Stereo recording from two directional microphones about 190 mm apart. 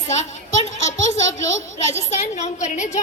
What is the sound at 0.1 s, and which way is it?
A child's voice, 35° left (ahead or behind).